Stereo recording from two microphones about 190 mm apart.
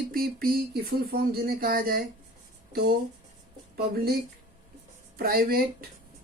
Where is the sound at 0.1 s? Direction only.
50° right (ahead or behind).